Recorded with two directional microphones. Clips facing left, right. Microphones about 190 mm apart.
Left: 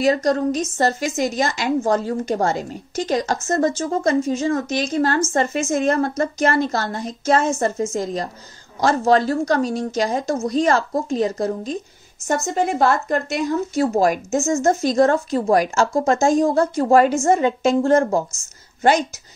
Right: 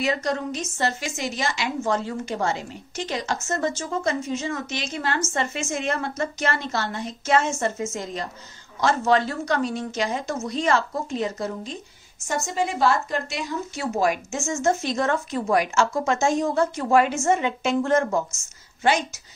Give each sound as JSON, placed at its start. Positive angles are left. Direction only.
{"t": 0.0, "sound": "a woman's voice", "side_deg": 40}
{"t": 12.3, "sound": "a woman's voice", "side_deg": 50}